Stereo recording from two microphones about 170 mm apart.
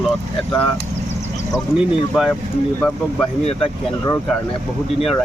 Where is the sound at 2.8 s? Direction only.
5° left (ahead or behind).